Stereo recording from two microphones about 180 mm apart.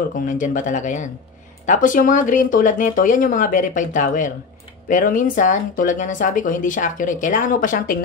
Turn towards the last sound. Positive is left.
turn(degrees=50)  # may be behind; listen again after turning